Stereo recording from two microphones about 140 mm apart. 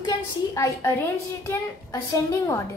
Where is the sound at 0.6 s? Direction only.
20° left (ahead or behind).